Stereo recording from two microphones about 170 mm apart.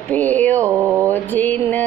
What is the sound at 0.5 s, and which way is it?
Speech, 15° right (ahead or behind).